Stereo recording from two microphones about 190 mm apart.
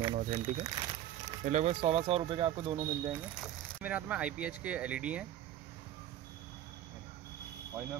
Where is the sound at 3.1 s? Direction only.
10° right (ahead or behind).